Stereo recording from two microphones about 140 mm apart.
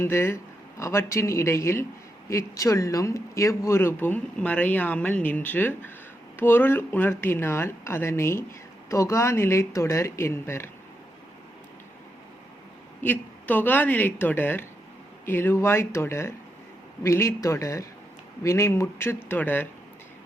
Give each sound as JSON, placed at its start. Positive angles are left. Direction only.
{"t": 0.0, "sound": "speech", "side_deg": 20}
{"t": 13.0, "sound": "speech", "side_deg": 15}